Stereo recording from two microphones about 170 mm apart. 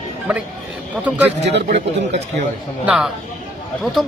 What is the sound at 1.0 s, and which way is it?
Speech, 10° right (ahead or behind).